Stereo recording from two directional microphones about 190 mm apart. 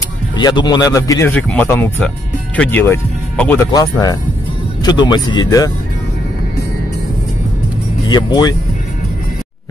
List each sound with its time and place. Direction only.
0.4 s speech: 20° left (ahead or behind)
8.1 s speech: 20° left (ahead or behind)